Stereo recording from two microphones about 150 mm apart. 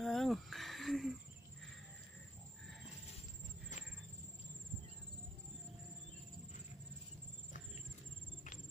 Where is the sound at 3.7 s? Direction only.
55° left (ahead or behind).